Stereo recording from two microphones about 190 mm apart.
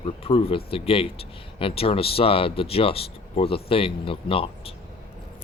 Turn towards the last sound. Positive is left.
turn(degrees=30)  # may be behind; listen again after turning